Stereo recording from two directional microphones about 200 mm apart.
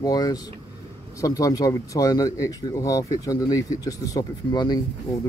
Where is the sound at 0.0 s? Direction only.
20° left (ahead or behind).